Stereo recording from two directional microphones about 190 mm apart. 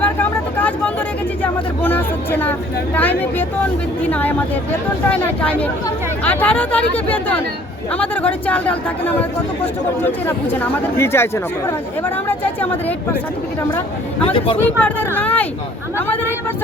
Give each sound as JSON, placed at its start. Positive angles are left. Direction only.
{"t": 0.0, "sound": "vehicle", "side_deg": 10}
{"t": 1.4, "sound": "speech", "side_deg": 10}
{"t": 14.3, "sound": "speech", "side_deg": 30}
{"t": 14.6, "sound": "speech", "side_deg": 10}